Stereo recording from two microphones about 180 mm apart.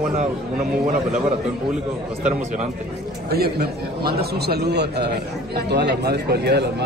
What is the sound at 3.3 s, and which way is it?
A man's voice, 60° right (ahead or behind).